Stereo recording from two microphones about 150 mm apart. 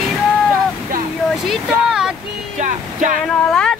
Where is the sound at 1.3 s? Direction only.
5° right (ahead or behind).